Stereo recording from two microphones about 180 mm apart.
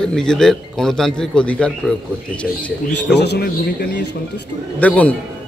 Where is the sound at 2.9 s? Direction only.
70° left (ahead or behind).